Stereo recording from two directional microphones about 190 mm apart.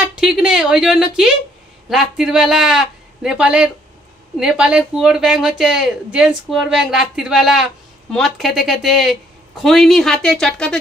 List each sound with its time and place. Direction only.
0.0 s a man's voice: 5° right (ahead or behind)